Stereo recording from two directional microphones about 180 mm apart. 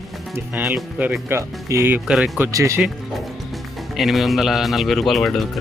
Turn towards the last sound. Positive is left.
turn(degrees=0)  # may be behind; listen again after turning